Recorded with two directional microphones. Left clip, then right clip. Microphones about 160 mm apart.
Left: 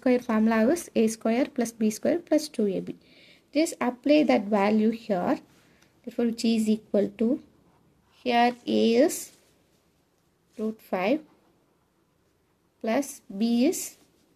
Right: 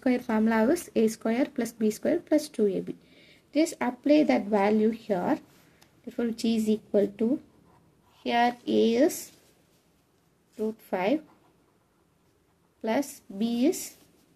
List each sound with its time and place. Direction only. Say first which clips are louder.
0.0 s speech: left 3 dB; 30° left (ahead or behind)
10.5 s speech: even; 35° left (ahead or behind)
12.8 s speech: left 1 dB; 30° left (ahead or behind)